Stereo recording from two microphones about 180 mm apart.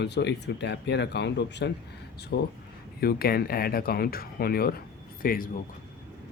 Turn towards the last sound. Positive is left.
turn(degrees=50)  # may be behind; listen again after turning